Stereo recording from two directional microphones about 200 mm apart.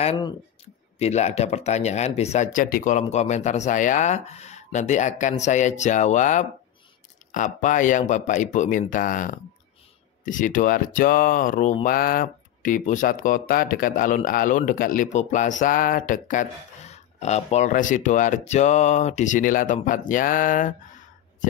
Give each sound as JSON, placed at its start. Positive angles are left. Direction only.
{"t": 0.0, "sound": "speech", "side_deg": 30}